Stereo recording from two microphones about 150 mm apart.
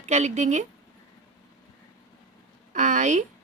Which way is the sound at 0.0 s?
50° right (ahead or behind).